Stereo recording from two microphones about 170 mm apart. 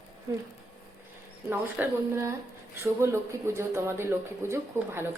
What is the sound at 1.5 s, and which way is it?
A woman's voice, 15° right (ahead or behind).